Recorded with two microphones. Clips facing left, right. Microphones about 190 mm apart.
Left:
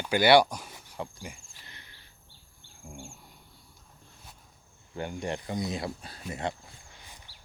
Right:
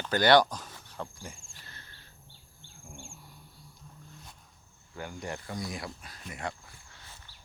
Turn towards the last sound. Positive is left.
turn(degrees=15)  # may be behind; listen again after turning